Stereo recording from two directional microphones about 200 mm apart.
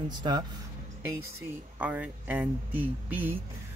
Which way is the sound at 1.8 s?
5° right (ahead or behind).